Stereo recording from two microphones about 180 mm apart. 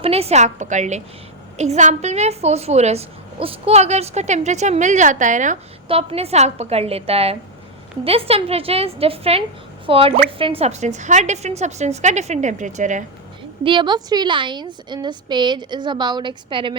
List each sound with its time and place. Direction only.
0.0 s a woman's voice: 35° right (ahead or behind)
5.9 s a woman's voice: 30° right (ahead or behind)
13.7 s a woman's voice: 25° right (ahead or behind)